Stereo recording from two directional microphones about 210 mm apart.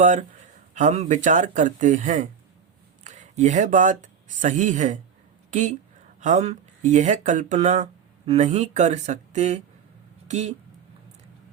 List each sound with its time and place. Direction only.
0.0 s speech: 35° right (ahead or behind)